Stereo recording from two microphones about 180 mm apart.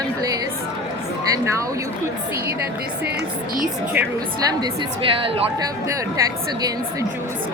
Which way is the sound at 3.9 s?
20° right (ahead or behind).